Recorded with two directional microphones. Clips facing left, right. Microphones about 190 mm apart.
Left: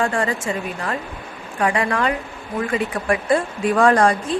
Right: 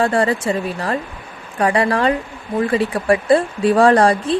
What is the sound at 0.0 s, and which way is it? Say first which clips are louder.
Speech: right 5 dB; 35° right (ahead or behind).